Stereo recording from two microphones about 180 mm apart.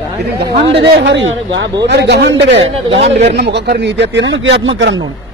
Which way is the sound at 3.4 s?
65° right (ahead or behind).